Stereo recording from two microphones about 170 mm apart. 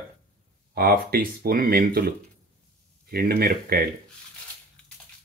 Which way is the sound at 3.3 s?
60° right (ahead or behind).